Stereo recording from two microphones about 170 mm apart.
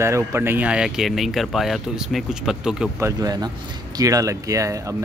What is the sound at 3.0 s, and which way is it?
Speech, 20° right (ahead or behind).